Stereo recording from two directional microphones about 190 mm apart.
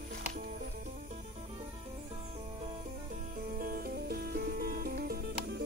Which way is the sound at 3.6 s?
50° right (ahead or behind).